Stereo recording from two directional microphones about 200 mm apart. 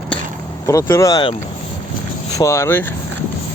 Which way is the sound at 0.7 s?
15° left (ahead or behind).